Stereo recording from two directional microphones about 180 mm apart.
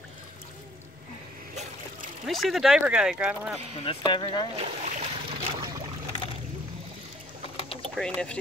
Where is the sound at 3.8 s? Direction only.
25° left (ahead or behind).